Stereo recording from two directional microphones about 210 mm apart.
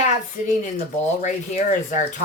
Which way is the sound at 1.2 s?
35° left (ahead or behind).